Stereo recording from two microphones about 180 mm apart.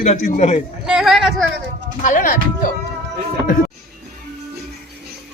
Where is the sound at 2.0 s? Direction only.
45° left (ahead or behind).